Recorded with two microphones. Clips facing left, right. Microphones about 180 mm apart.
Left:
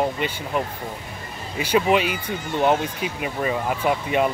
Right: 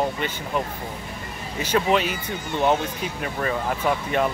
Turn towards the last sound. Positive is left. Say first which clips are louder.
# left 2 dB
turn(degrees=10)  # may be behind; listen again after turning